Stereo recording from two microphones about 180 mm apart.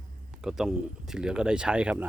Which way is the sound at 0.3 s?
5° right (ahead or behind).